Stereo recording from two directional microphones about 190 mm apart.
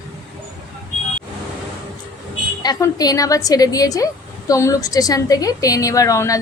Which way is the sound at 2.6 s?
20° left (ahead or behind).